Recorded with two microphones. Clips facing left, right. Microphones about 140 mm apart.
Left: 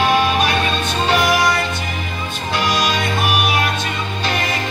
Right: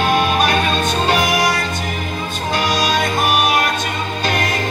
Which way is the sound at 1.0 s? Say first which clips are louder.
Left 3 dB; 45° right (ahead or behind).